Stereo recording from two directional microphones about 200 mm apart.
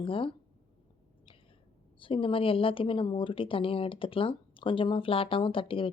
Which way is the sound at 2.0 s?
25° left (ahead or behind).